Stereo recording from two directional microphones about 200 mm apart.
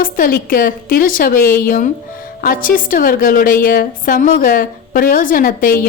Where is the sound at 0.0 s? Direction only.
45° left (ahead or behind).